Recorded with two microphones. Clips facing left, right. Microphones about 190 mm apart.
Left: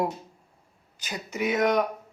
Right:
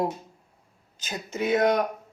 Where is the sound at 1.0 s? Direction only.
25° right (ahead or behind).